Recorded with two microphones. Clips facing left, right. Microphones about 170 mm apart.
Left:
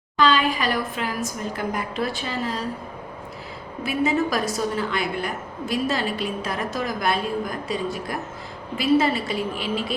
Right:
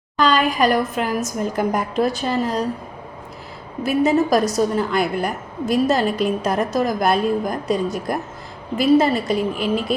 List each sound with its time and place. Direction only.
0.2 s a woman's voice: 45° right (ahead or behind)
3.8 s a woman's voice: 40° right (ahead or behind)